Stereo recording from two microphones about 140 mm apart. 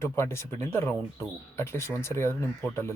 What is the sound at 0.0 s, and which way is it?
Speech, 20° left (ahead or behind).